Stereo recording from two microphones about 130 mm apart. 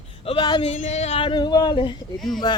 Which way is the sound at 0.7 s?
60° left (ahead or behind).